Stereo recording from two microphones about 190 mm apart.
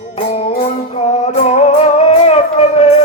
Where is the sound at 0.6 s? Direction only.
35° left (ahead or behind).